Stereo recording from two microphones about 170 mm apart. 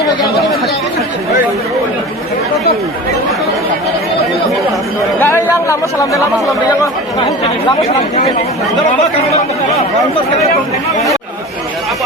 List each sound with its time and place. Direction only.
5.2 s speech: 15° left (ahead or behind)
7.9 s speech: 40° left (ahead or behind)